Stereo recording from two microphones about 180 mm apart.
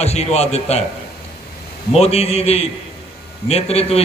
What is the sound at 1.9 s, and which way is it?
A man's voice, 35° left (ahead or behind).